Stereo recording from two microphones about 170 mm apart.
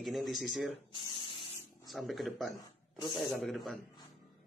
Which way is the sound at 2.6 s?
25° left (ahead or behind).